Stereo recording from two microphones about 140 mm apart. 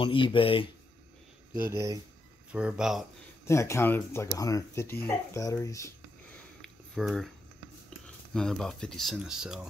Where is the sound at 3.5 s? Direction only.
20° left (ahead or behind).